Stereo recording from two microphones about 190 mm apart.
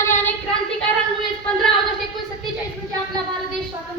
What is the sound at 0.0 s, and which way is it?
Child singing, 10° left (ahead or behind).